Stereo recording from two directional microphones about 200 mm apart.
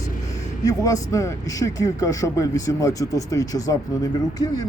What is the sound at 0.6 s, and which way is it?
A man's voice, 15° left (ahead or behind).